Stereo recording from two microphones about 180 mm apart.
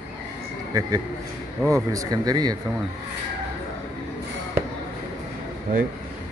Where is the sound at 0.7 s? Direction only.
20° right (ahead or behind).